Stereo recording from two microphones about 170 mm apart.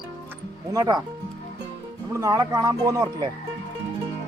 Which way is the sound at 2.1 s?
20° right (ahead or behind).